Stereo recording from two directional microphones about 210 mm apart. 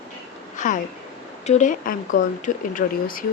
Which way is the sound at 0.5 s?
35° left (ahead or behind).